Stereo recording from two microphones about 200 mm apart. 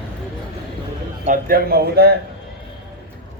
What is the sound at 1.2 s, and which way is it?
Speech, 45° right (ahead or behind).